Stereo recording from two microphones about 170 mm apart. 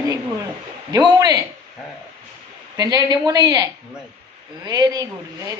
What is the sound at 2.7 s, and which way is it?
Speech, 20° right (ahead or behind).